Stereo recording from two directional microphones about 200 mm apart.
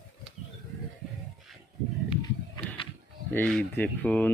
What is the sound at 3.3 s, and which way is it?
Speech, 5° left (ahead or behind).